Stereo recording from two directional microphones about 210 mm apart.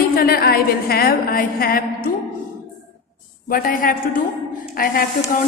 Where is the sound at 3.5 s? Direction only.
40° left (ahead or behind).